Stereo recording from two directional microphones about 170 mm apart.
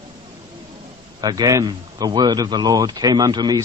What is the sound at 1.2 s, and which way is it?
Speech, 20° right (ahead or behind).